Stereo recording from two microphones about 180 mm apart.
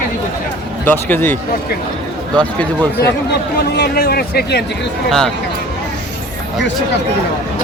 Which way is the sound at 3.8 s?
60° left (ahead or behind).